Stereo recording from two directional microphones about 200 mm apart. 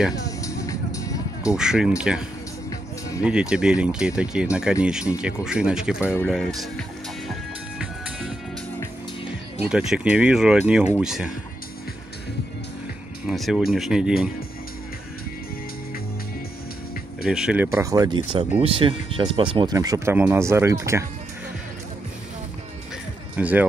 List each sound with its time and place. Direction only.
0.1 s music: 15° left (ahead or behind)
1.5 s speech: 5° right (ahead or behind)
9.6 s speech: 5° right (ahead or behind)
13.3 s speech: centre (ahead or behind)
17.2 s speech: 5° right (ahead or behind)
23.3 s speech: 10° right (ahead or behind)